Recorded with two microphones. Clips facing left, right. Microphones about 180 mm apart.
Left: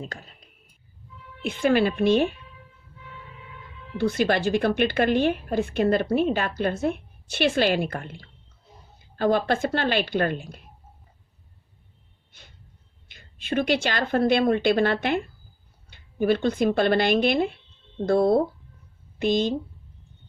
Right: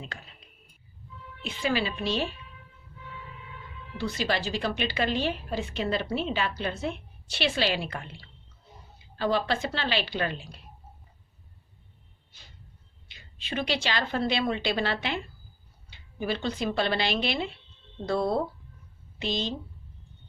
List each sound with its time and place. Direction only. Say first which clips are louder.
0.0 s speech: left 6 dB; 40° left (ahead or behind)
1.4 s speech: left 8 dB; 50° left (ahead or behind)
3.9 s speech: left 7 dB; 55° left (ahead or behind)
13.1 s speech: left 7 dB; 50° left (ahead or behind)